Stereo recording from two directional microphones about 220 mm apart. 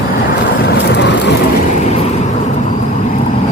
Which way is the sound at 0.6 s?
50° left (ahead or behind).